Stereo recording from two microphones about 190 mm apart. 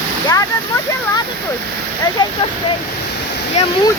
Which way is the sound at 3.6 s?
35° left (ahead or behind).